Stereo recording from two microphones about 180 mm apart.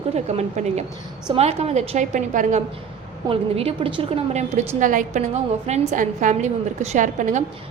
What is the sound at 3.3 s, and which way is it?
A woman's voice, 30° right (ahead or behind).